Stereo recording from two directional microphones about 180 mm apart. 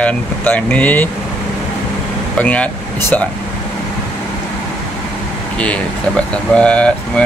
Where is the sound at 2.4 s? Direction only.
10° left (ahead or behind).